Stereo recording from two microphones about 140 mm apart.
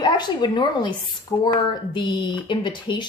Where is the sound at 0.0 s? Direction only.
30° left (ahead or behind).